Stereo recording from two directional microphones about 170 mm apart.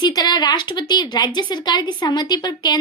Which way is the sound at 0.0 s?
25° left (ahead or behind).